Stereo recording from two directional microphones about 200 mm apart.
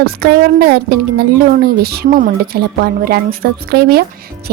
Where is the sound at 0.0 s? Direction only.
50° right (ahead or behind).